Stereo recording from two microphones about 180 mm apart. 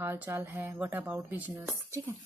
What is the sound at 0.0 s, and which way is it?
Speech, 15° right (ahead or behind).